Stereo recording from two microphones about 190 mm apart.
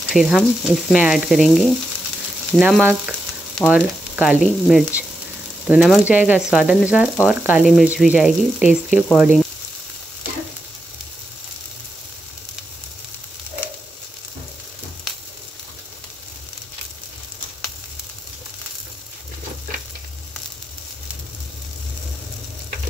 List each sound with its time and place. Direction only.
0.1 s speech: centre (ahead or behind)